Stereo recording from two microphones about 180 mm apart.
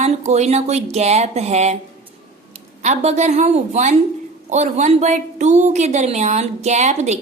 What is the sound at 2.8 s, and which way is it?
A woman's voice, 40° right (ahead or behind).